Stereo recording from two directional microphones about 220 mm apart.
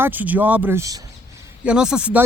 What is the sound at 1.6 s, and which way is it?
Speech, 5° right (ahead or behind).